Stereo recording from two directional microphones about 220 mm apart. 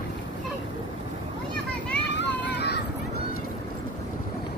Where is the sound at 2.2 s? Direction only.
50° left (ahead or behind).